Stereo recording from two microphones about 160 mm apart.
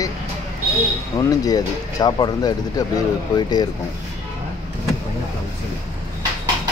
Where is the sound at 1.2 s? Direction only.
25° left (ahead or behind).